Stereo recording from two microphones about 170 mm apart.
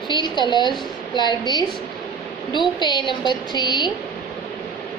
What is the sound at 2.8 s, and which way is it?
A woman's voice, 25° left (ahead or behind).